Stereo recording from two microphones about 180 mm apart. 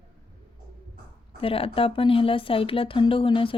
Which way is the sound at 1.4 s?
30° left (ahead or behind).